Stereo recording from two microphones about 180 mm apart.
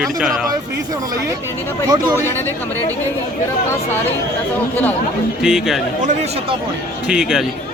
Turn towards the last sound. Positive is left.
turn(degrees=-5)  # may be behind; listen again after turning